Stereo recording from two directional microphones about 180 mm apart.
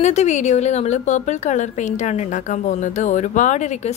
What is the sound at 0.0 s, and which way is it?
A woman's voice, 40° left (ahead or behind).